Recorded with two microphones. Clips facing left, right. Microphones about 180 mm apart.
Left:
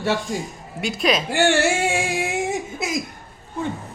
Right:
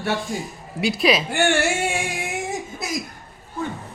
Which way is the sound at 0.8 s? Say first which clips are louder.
Right 2 dB; centre (ahead or behind).